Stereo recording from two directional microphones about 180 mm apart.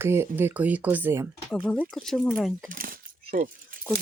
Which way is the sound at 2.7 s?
50° right (ahead or behind).